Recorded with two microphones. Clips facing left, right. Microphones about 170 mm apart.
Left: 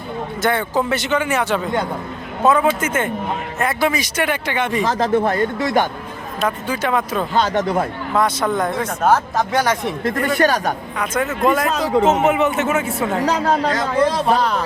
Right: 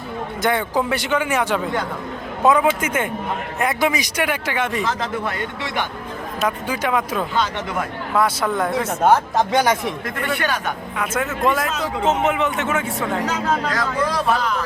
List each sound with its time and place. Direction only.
0.4 s speech: 15° right (ahead or behind)
4.8 s a man's voice: 40° left (ahead or behind)
6.4 s speech: 10° right (ahead or behind)
7.3 s speech: 45° left (ahead or behind)
8.1 s speech: 5° right (ahead or behind)
10.0 s a man's voice: 35° left (ahead or behind)
10.9 s speech: 5° right (ahead or behind)
11.7 s a man's voice: 35° left (ahead or behind)
12.3 s speech: 5° left (ahead or behind)
13.1 s a man's voice: 35° left (ahead or behind)
14.3 s a man's voice: 35° left (ahead or behind)